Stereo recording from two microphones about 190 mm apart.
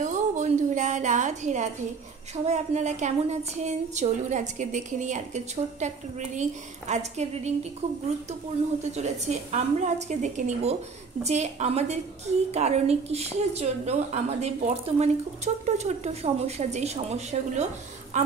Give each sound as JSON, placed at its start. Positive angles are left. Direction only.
{"t": 0.0, "sound": "a woman's voice", "side_deg": -40}
{"t": 8.9, "sound": "speech", "side_deg": -35}